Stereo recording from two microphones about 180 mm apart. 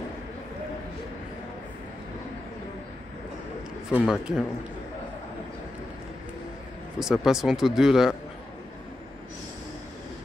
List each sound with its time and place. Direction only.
3.9 s speech: centre (ahead or behind)
7.0 s speech: 5° right (ahead or behind)